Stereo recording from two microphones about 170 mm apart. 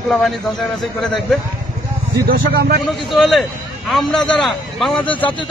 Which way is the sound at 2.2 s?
65° right (ahead or behind).